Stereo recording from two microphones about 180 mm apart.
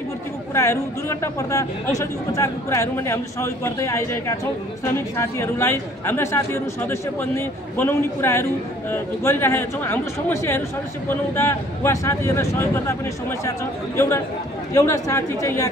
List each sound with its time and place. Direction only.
0.6 s speech: 15° left (ahead or behind)
13.9 s speech: 15° left (ahead or behind)